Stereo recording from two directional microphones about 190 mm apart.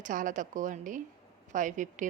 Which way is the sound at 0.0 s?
45° right (ahead or behind).